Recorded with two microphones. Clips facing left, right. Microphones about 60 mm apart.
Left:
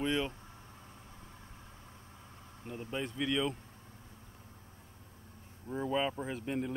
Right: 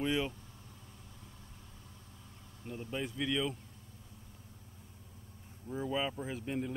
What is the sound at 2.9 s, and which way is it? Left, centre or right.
Speech, centre.